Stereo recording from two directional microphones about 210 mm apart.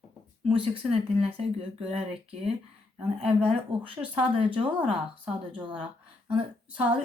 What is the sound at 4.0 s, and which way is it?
Speech, 10° right (ahead or behind).